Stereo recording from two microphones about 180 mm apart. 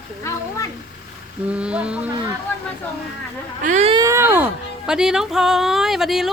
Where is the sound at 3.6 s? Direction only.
40° right (ahead or behind).